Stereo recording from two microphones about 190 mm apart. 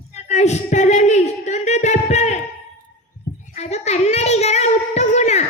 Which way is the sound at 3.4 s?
35° left (ahead or behind).